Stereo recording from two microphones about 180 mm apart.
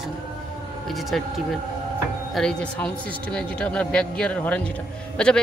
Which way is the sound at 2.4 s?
5° left (ahead or behind).